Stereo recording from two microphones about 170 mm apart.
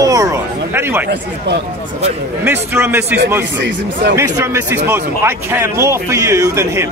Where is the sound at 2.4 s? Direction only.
15° right (ahead or behind).